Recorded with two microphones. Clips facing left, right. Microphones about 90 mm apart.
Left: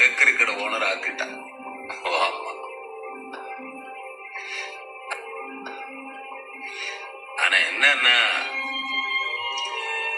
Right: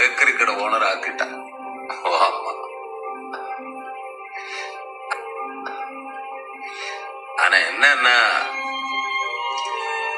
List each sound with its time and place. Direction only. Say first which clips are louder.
0.0 s music: right 3 dB; 20° right (ahead or behind)
7.3 s music: right 6 dB; 20° right (ahead or behind)